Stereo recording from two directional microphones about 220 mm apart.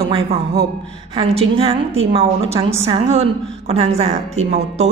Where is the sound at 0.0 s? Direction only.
25° right (ahead or behind).